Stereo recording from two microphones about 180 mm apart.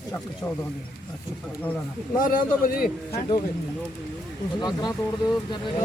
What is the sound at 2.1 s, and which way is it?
Speech, 50° left (ahead or behind).